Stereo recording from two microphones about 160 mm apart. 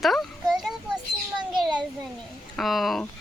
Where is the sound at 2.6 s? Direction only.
Centre (ahead or behind).